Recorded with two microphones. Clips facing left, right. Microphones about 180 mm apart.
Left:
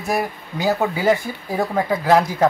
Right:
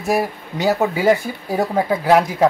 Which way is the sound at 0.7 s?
10° right (ahead or behind).